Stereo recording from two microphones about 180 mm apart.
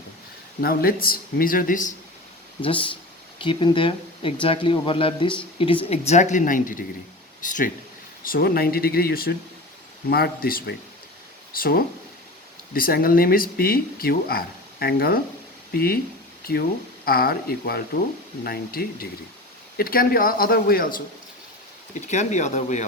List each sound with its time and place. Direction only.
0.6 s speech: 55° left (ahead or behind)
2.6 s speech: 30° left (ahead or behind); by 16.0 s 55° left (ahead or behind)
17.1 s speech: 55° left (ahead or behind)
22.0 s speech: 40° left (ahead or behind)